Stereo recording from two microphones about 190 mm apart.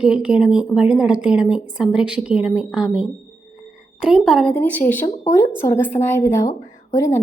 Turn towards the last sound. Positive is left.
turn(degrees=15)  # may be behind; listen again after turning